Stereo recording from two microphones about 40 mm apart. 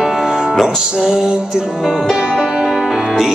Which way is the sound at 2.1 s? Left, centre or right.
Centre.